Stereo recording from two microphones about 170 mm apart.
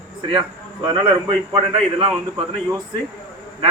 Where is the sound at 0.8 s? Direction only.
30° right (ahead or behind).